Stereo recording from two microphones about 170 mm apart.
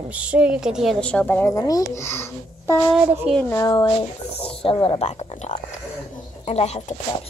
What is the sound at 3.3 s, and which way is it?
Speech, 15° left (ahead or behind).